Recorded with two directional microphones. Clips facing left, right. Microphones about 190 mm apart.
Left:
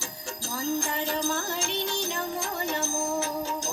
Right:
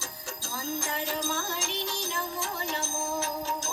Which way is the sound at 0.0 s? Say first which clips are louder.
Left 3 dB; 50° left (ahead or behind).